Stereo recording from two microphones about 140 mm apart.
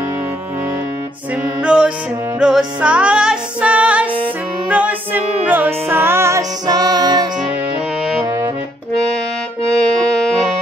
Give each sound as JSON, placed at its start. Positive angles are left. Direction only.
{"t": 1.6, "sound": "music", "side_deg": -5}